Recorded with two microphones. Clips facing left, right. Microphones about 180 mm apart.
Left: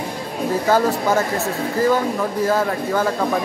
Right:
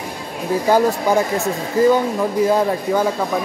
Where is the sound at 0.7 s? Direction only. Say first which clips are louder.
Right 2 dB; 15° right (ahead or behind).